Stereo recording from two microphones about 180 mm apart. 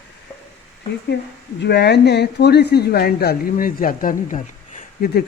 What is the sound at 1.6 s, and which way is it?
Speech, 70° left (ahead or behind).